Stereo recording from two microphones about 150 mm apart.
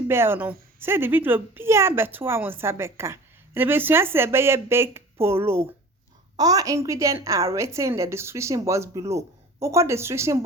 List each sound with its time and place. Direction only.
0.1 s a woman's voice: 15° right (ahead or behind)